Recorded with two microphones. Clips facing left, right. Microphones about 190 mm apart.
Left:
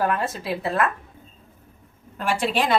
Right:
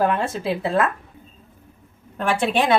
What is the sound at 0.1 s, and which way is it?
Speech, 25° right (ahead or behind).